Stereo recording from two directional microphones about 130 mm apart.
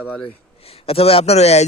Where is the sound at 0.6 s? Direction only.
50° left (ahead or behind).